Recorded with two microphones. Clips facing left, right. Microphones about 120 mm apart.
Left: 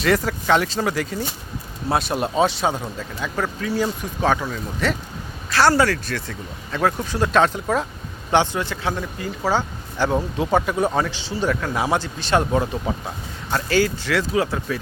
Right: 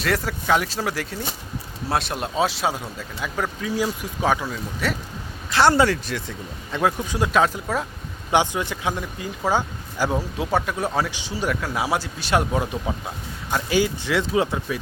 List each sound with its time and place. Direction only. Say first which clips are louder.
0.0 s speech: left 4 dB; centre (ahead or behind)
5.5 s speech: even; 20° right (ahead or behind); by 7.9 s centre (ahead or behind)
8.3 s speech: left 1 dB; 15° right (ahead or behind)
9.5 s a sound: even; 15° right (ahead or behind)
10.3 s speech: left 4 dB; centre (ahead or behind)
13.5 s speech: left 1 dB; 15° right (ahead or behind)